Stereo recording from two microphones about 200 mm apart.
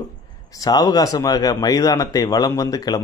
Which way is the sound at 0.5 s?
20° left (ahead or behind).